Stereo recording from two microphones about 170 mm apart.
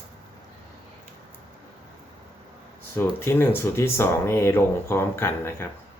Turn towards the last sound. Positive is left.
turn(degrees=15)  # may be behind; listen again after turning